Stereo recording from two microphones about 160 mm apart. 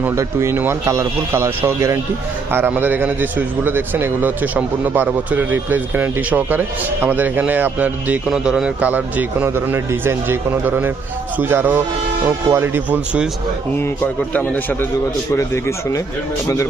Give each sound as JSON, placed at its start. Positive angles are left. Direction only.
{"t": 0.0, "sound": "a man's voice", "side_deg": -15}
{"t": 13.7, "sound": "speech", "side_deg": 15}